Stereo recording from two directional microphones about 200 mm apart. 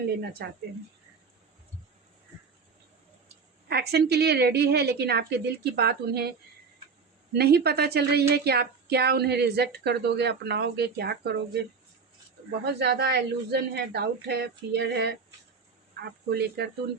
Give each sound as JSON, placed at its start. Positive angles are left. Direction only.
{"t": 0.4, "sound": "a woman's voice", "side_deg": -55}
{"t": 3.7, "sound": "a woman's voice", "side_deg": -55}
{"t": 7.3, "sound": "a woman's voice", "side_deg": -50}
{"t": 12.6, "sound": "a woman's voice", "side_deg": -55}